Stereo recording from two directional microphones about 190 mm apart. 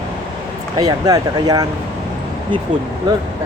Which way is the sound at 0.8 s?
20° right (ahead or behind).